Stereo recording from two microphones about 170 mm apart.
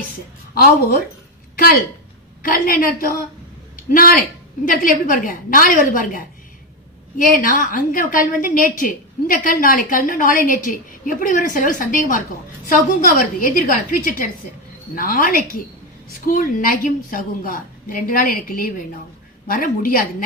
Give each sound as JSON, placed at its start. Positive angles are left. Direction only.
{"t": 2.4, "sound": "a woman's voice", "side_deg": 55}